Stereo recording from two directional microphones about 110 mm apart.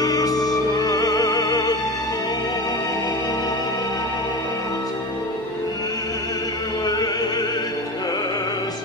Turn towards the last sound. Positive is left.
turn(degrees=35)  # may be behind; listen again after turning